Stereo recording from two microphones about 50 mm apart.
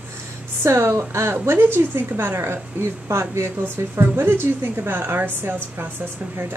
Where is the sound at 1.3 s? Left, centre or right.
Right.